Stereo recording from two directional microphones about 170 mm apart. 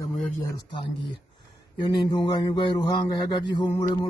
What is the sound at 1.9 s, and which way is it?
A man's voice, 25° left (ahead or behind).